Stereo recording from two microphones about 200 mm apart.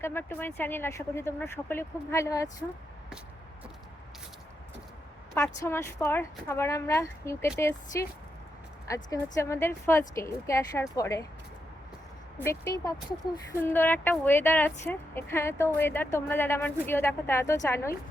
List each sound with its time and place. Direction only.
0.0 s speech: 10° left (ahead or behind)
5.3 s speech: 15° left (ahead or behind)
12.5 s speech: 15° left (ahead or behind)